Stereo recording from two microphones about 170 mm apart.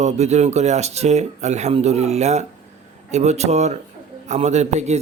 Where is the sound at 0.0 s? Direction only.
40° right (ahead or behind).